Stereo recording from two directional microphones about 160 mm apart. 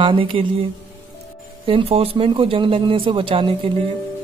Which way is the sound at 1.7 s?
35° right (ahead or behind).